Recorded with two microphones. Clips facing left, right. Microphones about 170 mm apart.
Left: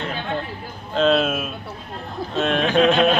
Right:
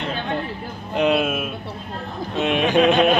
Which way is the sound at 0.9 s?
15° right (ahead or behind).